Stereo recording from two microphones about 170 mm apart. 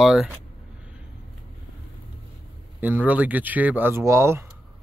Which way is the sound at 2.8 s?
10° right (ahead or behind).